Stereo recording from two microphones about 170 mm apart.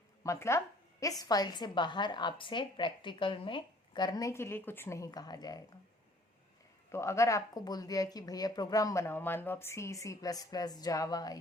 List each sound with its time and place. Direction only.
0.2 s a sound: 15° left (ahead or behind)
1.2 s a woman's voice: 20° left (ahead or behind)
6.9 s a woman's voice: 15° left (ahead or behind)